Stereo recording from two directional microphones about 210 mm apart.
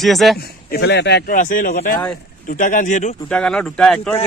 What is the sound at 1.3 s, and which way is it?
Speech, 40° left (ahead or behind).